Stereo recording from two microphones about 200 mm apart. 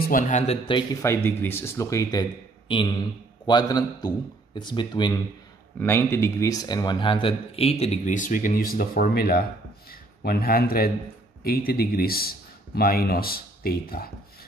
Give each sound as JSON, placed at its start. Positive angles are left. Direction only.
{"t": 0.0, "sound": "speech", "side_deg": 40}
{"t": 1.0, "sound": "speech", "side_deg": 15}